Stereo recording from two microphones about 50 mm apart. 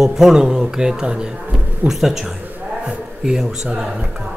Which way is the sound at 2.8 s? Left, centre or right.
Centre.